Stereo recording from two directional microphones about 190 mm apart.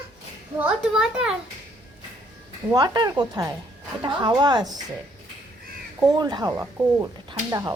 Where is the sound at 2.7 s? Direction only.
20° right (ahead or behind).